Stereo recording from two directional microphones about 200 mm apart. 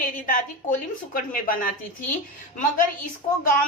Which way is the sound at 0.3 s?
40° left (ahead or behind).